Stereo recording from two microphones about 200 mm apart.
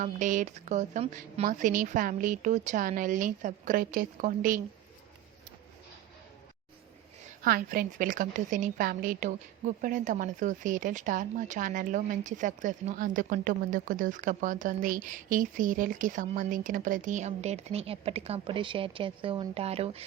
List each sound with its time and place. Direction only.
0.0 s speech: 40° right (ahead or behind)
7.4 s a woman's voice: 45° right (ahead or behind); by 20.1 s 30° right (ahead or behind)